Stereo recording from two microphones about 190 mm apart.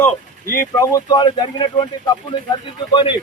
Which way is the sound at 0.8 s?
20° left (ahead or behind).